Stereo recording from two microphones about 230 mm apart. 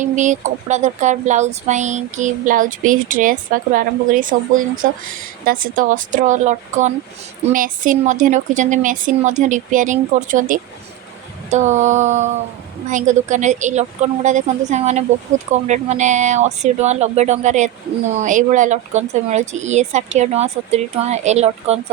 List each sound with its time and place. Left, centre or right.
0.0 s speech: right